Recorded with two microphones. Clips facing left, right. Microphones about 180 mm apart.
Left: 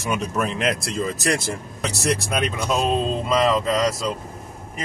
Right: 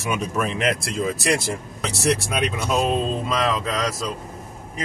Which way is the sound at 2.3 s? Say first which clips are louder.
Even; centre (ahead or behind).